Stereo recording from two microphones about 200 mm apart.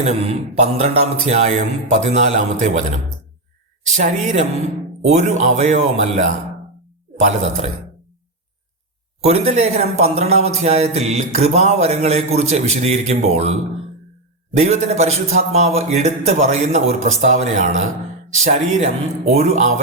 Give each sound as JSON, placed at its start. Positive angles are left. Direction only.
{"t": 0.0, "sound": "mantra", "side_deg": -30}
{"t": 3.9, "sound": "mantra", "side_deg": -35}
{"t": 9.2, "sound": "mantra", "side_deg": -30}